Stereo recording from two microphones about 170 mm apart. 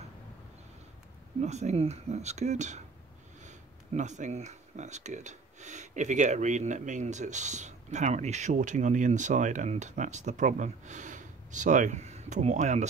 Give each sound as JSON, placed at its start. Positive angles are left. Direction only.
{"t": 1.4, "sound": "speech", "side_deg": -40}